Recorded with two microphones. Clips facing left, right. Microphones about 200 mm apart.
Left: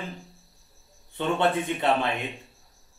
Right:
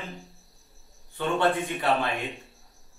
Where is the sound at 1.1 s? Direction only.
20° left (ahead or behind).